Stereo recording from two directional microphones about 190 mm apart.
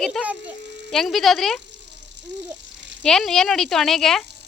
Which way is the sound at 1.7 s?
70° right (ahead or behind).